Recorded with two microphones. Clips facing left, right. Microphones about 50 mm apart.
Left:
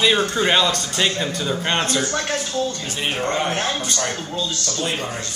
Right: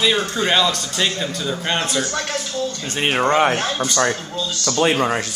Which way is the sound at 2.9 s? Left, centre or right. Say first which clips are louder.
Right 5 dB; right.